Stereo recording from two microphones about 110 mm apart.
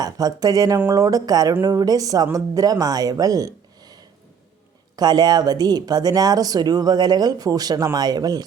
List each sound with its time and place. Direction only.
0.0 s speech: 35° right (ahead or behind)